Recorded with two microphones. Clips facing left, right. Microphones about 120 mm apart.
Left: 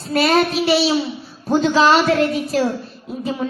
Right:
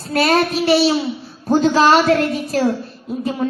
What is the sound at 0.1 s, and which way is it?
A woman's voice, 45° right (ahead or behind).